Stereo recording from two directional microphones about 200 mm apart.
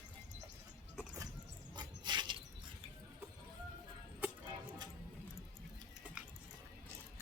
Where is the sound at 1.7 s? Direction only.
20° right (ahead or behind).